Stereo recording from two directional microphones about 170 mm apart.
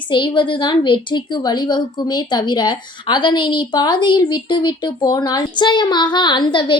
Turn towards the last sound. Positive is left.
turn(degrees=30)  # may be behind; listen again after turning